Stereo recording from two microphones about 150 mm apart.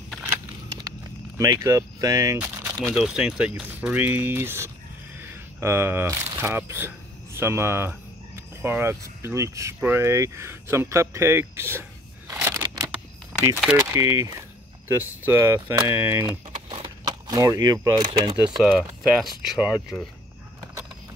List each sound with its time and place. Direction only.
1.4 s speech: 20° right (ahead or behind)
2.3 s a sound: 15° right (ahead or behind)
2.9 s speech: 5° right (ahead or behind)
12.3 s scissors: 15° right (ahead or behind)
13.3 s speech: centre (ahead or behind)
13.7 s speech: 20° right (ahead or behind)
16.6 s speech: 35° right (ahead or behind)
18.7 s speech: centre (ahead or behind)